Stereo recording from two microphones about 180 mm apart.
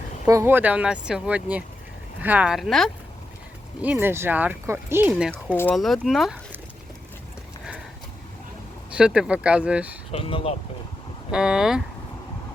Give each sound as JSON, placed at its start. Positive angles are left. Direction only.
{"t": 0.3, "sound": "speech", "side_deg": -15}
{"t": 3.8, "sound": "speech", "side_deg": -10}
{"t": 5.7, "sound": "speech", "side_deg": 0}
{"t": 9.0, "sound": "speech", "side_deg": -5}
{"t": 10.1, "sound": "speech", "side_deg": 30}
{"t": 11.3, "sound": "speech", "side_deg": -5}